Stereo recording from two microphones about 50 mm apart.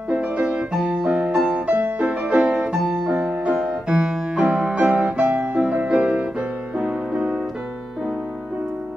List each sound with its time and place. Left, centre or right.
0.1 s music: centre
1.5 s music: right